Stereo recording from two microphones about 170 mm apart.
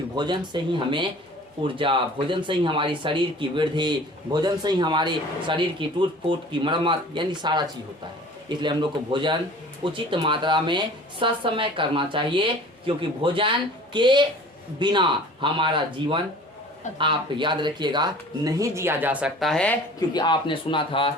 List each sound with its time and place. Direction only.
0.2 s speech: 25° right (ahead or behind); by 19.8 s 5° left (ahead or behind)
20.0 s speech: 25° left (ahead or behind)